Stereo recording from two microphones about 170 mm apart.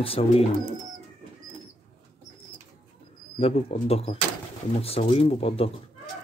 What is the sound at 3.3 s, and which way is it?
Speech, 35° left (ahead or behind).